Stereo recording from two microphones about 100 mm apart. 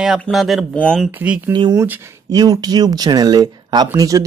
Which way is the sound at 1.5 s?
50° right (ahead or behind).